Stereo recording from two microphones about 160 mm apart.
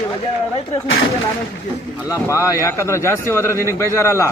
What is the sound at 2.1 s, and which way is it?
Speech, 20° left (ahead or behind).